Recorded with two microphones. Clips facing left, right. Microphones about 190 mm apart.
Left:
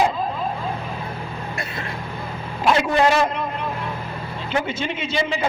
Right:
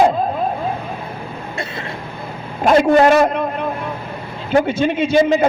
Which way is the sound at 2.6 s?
45° right (ahead or behind).